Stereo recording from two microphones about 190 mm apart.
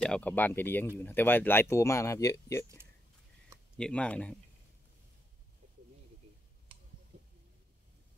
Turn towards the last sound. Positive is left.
turn(degrees=-30)  # may be behind; listen again after turning